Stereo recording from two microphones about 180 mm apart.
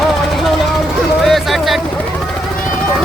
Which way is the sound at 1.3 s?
Centre (ahead or behind).